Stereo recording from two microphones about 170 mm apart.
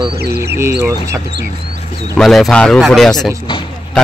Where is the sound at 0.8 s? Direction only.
15° right (ahead or behind).